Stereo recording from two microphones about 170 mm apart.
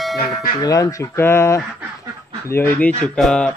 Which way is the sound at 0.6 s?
20° left (ahead or behind).